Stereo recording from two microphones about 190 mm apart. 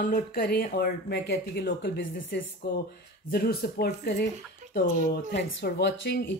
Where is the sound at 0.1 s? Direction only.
50° left (ahead or behind).